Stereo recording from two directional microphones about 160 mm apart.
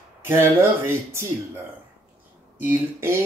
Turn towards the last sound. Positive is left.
turn(degrees=-15)  # may be behind; listen again after turning